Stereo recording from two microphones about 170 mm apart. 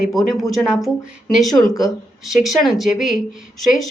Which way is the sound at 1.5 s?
20° left (ahead or behind).